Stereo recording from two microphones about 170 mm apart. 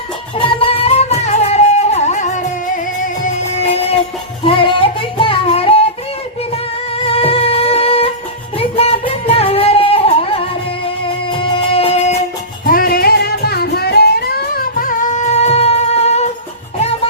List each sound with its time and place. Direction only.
0.3 s music: 30° left (ahead or behind)
12.6 s music: 55° left (ahead or behind); by 16.3 s 40° left (ahead or behind)